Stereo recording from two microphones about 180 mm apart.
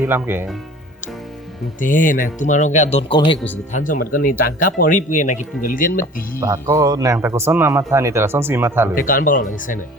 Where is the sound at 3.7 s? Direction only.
45° left (ahead or behind).